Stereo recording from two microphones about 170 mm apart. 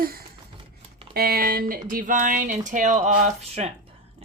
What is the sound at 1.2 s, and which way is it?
Speech, 60° right (ahead or behind).